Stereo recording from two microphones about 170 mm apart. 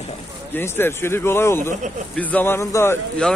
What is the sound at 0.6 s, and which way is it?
Speech, 15° left (ahead or behind).